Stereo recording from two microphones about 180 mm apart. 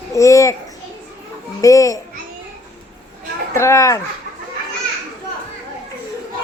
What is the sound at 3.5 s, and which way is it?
Speech, 15° left (ahead or behind).